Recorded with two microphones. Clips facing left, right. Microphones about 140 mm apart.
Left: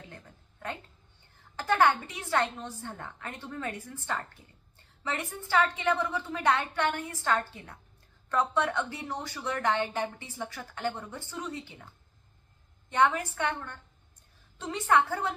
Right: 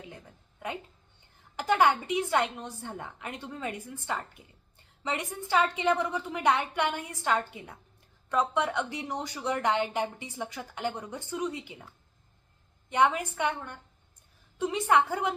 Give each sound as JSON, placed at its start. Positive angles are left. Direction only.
{"t": 0.0, "sound": "a sound", "side_deg": -10}
{"t": 1.5, "sound": "a woman's voice", "side_deg": -15}
{"t": 12.9, "sound": "a woman's voice", "side_deg": -15}